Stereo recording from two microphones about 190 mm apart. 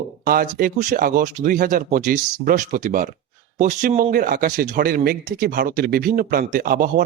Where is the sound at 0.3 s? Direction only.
50° right (ahead or behind).